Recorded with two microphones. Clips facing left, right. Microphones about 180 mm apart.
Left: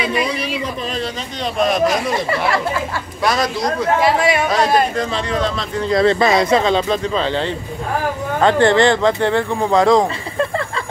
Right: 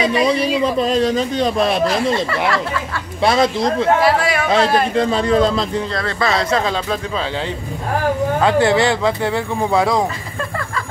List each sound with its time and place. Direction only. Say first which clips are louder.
0.0 s a man's voice: right 4 dB; 35° right (ahead or behind)
1.6 s speech: left 4 dB; 30° right (ahead or behind)
3.3 s speech: right 3 dB; 25° right (ahead or behind)
5.9 s speech: left 8 dB; 20° left (ahead or behind)
6.6 s speech: left 4 dB; 5° right (ahead or behind)
8.4 s speech: left 3 dB; 5° right (ahead or behind)